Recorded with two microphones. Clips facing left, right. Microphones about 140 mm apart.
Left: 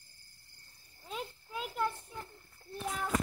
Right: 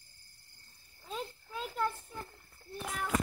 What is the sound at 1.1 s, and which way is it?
Children playing, 10° left (ahead or behind).